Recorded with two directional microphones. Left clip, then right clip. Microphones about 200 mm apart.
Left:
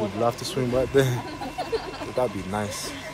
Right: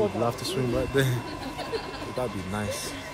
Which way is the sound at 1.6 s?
20° left (ahead or behind).